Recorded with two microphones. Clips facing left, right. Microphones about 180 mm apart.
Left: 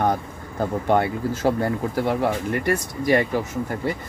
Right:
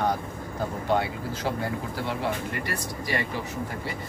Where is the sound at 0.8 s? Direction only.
50° left (ahead or behind).